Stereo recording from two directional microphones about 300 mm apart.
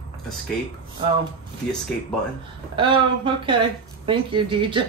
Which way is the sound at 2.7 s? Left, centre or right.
Centre.